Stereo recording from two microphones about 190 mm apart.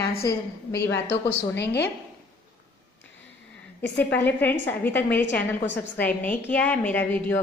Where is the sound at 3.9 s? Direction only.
10° left (ahead or behind).